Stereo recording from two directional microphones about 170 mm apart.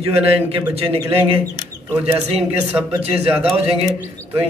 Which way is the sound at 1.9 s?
15° right (ahead or behind).